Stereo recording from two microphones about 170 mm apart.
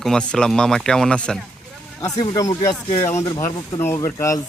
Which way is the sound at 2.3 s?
20° left (ahead or behind).